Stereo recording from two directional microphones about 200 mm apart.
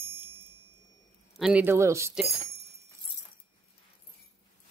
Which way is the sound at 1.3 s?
5° right (ahead or behind).